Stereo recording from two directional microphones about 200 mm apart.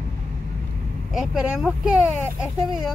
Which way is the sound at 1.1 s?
Centre (ahead or behind).